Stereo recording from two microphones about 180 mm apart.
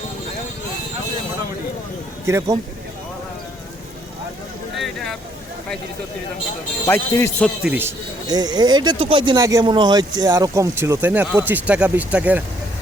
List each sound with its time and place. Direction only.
2.2 s speech: 15° right (ahead or behind)
4.8 s a sound: centre (ahead or behind)
6.8 s speech: 15° left (ahead or behind)
7.4 s speech: 5° right (ahead or behind)
8.3 s speech: 25° right (ahead or behind)